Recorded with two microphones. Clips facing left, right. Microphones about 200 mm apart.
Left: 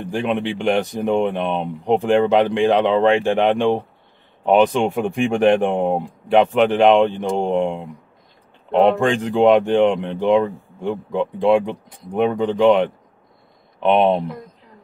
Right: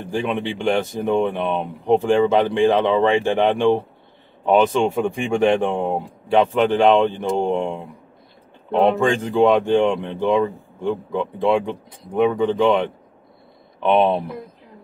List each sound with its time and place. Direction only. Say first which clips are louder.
0.3 s speech: left 2 dB; 15° left (ahead or behind)
9.1 s speech: left 2 dB; 15° left (ahead or behind)
13.8 s speech: left 1 dB; 15° left (ahead or behind)